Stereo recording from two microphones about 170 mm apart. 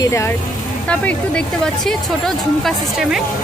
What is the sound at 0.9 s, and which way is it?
Speech, 5° left (ahead or behind).